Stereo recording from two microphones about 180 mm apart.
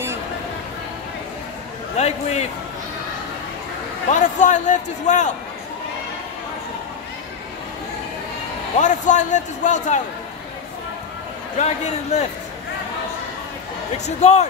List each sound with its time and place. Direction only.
2.0 s a man's voice: 40° left (ahead or behind)
4.1 s a man's voice: 45° left (ahead or behind)
8.7 s a man's voice: 45° left (ahead or behind)
11.5 s a man's voice: 40° left (ahead or behind)
13.9 s a man's voice: 40° left (ahead or behind)